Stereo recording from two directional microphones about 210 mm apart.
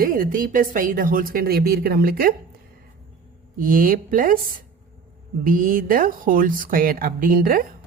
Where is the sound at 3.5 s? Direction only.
40° right (ahead or behind).